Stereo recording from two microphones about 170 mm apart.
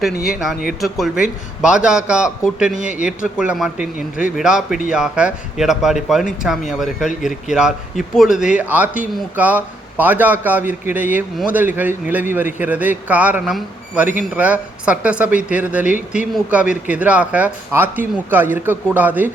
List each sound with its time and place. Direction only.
0.3 s a man's voice: 5° right (ahead or behind)
2.7 s a man's voice: 50° right (ahead or behind)
3.0 s a man's voice: 5° right (ahead or behind)